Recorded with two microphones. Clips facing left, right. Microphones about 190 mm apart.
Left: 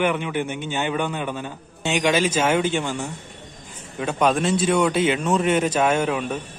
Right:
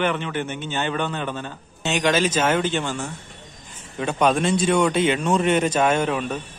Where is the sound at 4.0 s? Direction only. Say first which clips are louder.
Even; centre (ahead or behind).